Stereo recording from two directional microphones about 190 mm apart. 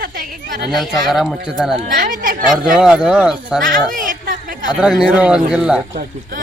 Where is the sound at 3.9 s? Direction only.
45° right (ahead or behind).